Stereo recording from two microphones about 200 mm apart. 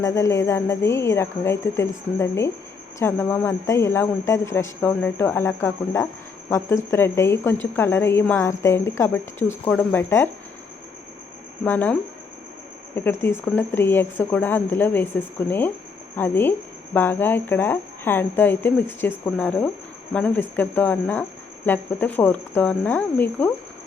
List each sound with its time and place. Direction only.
0.0 s speech: 15° left (ahead or behind)
11.6 s speech: 10° left (ahead or behind)
13.1 s speech: 10° left (ahead or behind)